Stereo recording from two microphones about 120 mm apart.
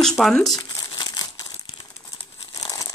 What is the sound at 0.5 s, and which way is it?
Crumpling, 35° left (ahead or behind).